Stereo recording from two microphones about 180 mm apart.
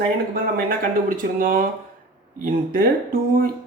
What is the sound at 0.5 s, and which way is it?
Speech, 50° right (ahead or behind).